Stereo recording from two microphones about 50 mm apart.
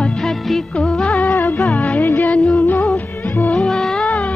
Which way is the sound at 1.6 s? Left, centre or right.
Left.